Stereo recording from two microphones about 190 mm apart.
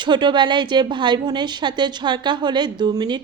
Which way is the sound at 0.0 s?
25° right (ahead or behind).